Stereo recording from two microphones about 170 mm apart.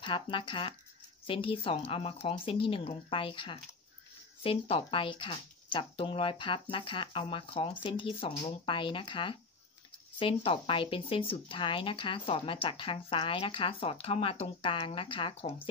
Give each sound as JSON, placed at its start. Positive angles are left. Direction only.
{"t": 0.0, "sound": "a woman's voice", "side_deg": 30}